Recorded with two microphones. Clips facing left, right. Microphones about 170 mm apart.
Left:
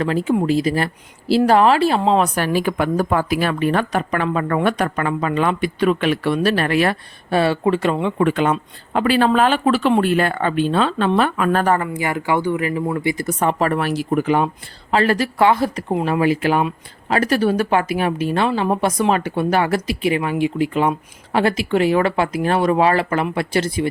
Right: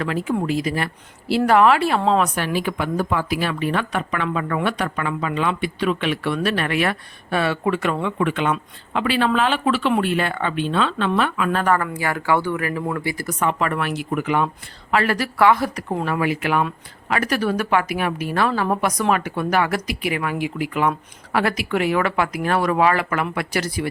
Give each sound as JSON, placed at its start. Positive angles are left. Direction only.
{"t": 0.0, "sound": "a woman's voice", "side_deg": 30}
{"t": 11.7, "sound": "speech", "side_deg": 20}
{"t": 13.4, "sound": "a woman's voice", "side_deg": 35}